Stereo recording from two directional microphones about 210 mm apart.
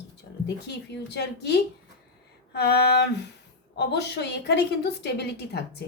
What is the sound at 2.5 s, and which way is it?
Speech, 50° left (ahead or behind).